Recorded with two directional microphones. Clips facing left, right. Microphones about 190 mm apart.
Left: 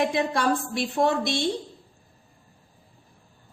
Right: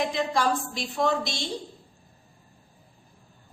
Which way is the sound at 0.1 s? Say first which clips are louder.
Left 2 dB; 60° left (ahead or behind).